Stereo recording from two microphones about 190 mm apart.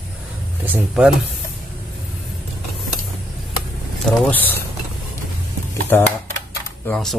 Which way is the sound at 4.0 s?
10° left (ahead or behind).